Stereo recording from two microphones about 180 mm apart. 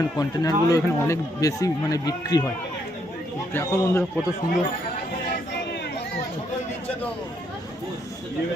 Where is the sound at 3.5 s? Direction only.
15° left (ahead or behind).